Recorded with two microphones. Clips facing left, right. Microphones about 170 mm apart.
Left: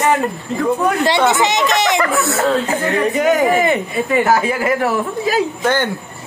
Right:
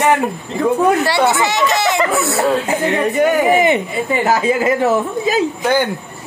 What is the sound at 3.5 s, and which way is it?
Speech, 20° right (ahead or behind).